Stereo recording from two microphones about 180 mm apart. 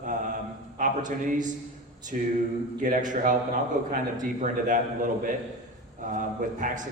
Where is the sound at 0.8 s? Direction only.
45° right (ahead or behind).